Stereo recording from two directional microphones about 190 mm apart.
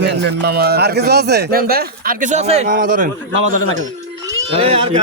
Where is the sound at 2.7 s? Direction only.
45° right (ahead or behind).